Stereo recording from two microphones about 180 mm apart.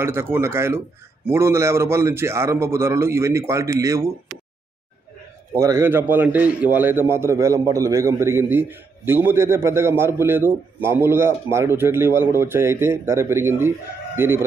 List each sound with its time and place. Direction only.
0.0 s a man's voice: 15° right (ahead or behind)
5.5 s a man's voice: 15° right (ahead or behind)